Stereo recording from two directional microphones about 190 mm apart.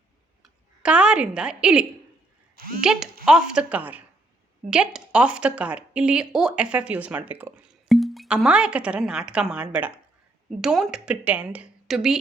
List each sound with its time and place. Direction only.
0.4 s a woman's voice: 5° right (ahead or behind)
2.6 s speech: 50° right (ahead or behind)
3.2 s a woman's voice: 5° right (ahead or behind)